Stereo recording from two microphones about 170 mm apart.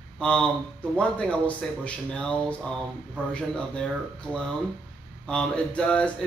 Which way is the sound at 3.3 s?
5° left (ahead or behind).